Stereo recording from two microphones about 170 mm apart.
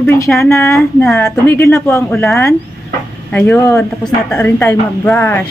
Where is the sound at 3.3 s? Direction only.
15° left (ahead or behind).